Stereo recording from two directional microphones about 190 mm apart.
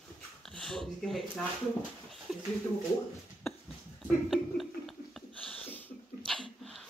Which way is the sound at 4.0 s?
Centre (ahead or behind).